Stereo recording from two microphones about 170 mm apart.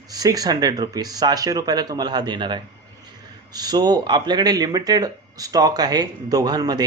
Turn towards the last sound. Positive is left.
turn(degrees=-25)  # may be behind; listen again after turning